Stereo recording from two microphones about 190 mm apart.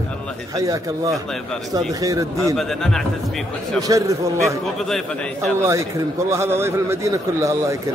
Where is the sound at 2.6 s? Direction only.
Centre (ahead or behind).